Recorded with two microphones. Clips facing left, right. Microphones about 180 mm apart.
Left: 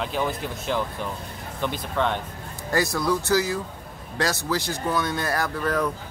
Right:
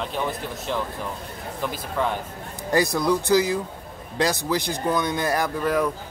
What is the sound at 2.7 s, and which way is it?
Speech, 15° right (ahead or behind).